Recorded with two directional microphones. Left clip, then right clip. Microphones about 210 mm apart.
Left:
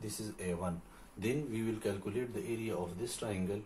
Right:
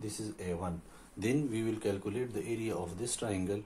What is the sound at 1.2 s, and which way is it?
Speech, 40° right (ahead or behind).